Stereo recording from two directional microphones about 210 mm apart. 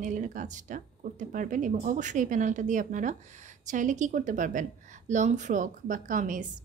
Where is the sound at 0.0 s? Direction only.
35° right (ahead or behind).